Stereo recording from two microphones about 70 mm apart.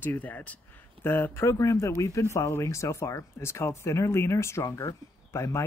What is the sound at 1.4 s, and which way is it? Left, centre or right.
Speech, left.